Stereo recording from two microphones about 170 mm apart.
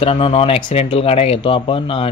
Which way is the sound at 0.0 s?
35° left (ahead or behind).